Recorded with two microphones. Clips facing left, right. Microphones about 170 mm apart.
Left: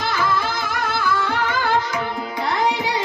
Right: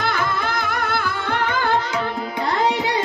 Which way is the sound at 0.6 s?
55° right (ahead or behind).